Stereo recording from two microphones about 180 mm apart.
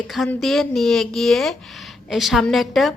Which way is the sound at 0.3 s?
Centre (ahead or behind).